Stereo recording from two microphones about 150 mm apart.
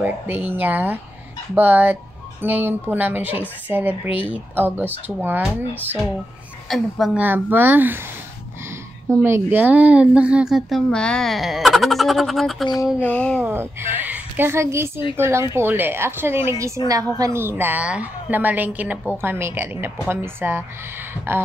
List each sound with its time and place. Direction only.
0.0 s a woman's voice: 10° right (ahead or behind)
6.7 s speech: centre (ahead or behind)
7.2 s a woman's voice: 10° right (ahead or behind)
9.2 s speech: 15° right (ahead or behind); by 13.4 s 10° left (ahead or behind)
13.4 s a woman's voice: 15° right (ahead or behind)